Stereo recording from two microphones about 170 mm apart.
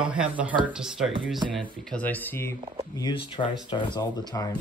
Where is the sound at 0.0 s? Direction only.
5° right (ahead or behind).